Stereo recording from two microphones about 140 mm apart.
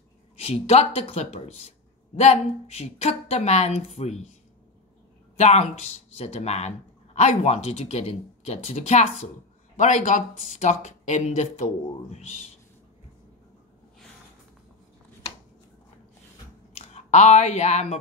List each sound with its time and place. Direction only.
0.4 s a woman's voice: 45° left (ahead or behind)
5.4 s a woman's voice: 50° left (ahead or behind)
16.7 s speech: 55° left (ahead or behind)